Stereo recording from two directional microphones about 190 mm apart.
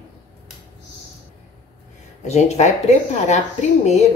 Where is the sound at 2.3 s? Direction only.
35° left (ahead or behind).